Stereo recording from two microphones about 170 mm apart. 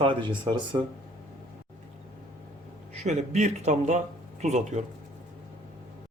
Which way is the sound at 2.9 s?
40° right (ahead or behind).